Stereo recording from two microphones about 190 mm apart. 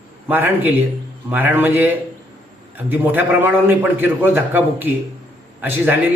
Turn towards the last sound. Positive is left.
turn(degrees=-10)  # may be behind; listen again after turning